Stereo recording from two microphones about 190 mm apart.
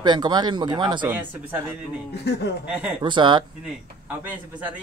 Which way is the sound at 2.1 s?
60° left (ahead or behind).